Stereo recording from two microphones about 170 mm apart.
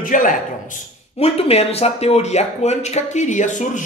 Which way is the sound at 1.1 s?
35° left (ahead or behind).